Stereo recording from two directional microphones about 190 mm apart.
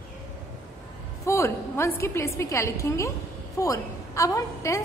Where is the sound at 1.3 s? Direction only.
15° left (ahead or behind).